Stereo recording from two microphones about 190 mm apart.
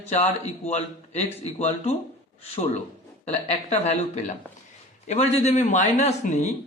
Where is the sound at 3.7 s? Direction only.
35° left (ahead or behind).